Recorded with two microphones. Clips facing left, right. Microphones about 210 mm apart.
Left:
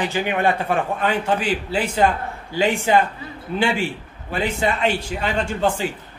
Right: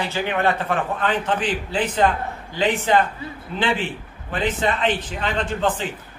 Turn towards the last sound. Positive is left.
turn(degrees=10)  # may be behind; listen again after turning